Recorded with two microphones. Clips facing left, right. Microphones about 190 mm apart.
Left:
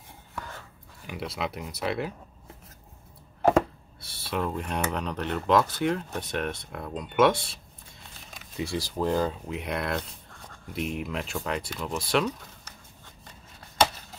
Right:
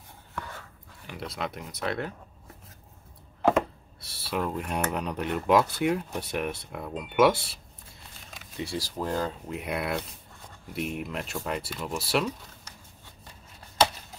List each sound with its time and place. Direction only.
1.0 s speech: 5° left (ahead or behind)
4.0 s speech: centre (ahead or behind)
8.7 s speech: 15° left (ahead or behind)
9.5 s speech: 5° right (ahead or behind)